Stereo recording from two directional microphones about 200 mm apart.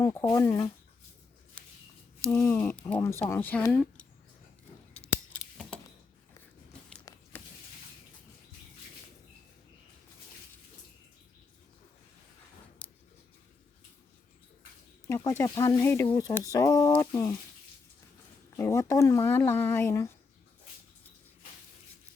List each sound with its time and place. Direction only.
0.0 s speech: 15° left (ahead or behind)
2.3 s speech: 10° left (ahead or behind)
7.1 s a sound: 20° left (ahead or behind)
15.0 s speech: 15° left (ahead or behind)
18.5 s speech: 15° left (ahead or behind)